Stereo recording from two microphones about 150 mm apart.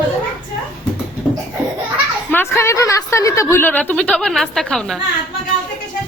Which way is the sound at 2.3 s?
15° left (ahead or behind).